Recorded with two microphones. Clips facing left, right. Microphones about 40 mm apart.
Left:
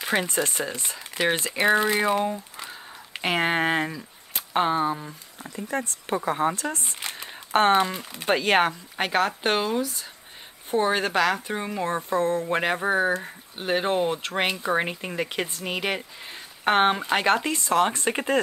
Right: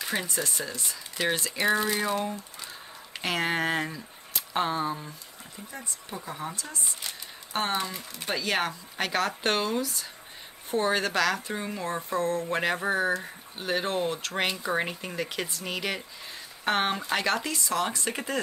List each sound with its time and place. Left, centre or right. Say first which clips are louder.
0.0 s speech: left 6 dB; left
5.6 s speech: left 12 dB; left
8.9 s speech: left 2 dB; left